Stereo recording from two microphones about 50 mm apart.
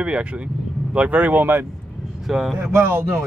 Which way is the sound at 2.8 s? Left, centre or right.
Right.